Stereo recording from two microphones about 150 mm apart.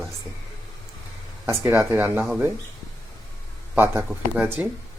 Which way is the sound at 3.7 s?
15° right (ahead or behind).